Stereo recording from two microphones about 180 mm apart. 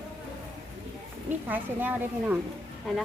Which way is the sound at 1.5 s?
10° right (ahead or behind).